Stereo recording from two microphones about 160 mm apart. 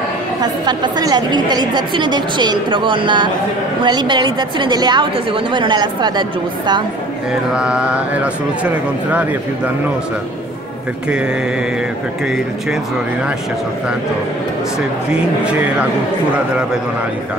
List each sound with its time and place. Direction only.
0.4 s a woman's voice: 25° right (ahead or behind)
7.5 s speech: 5° right (ahead or behind)
15.4 s speech: 10° right (ahead or behind)